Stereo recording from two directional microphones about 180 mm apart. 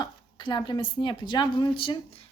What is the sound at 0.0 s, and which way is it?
A woman's voice, 25° left (ahead or behind).